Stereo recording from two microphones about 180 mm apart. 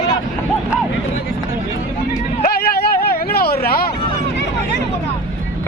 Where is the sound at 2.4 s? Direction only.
60° left (ahead or behind).